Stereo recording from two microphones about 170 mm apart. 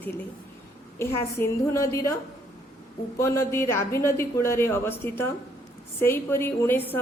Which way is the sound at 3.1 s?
15° left (ahead or behind).